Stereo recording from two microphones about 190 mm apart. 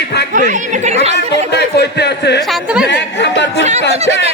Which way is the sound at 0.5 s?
40° right (ahead or behind).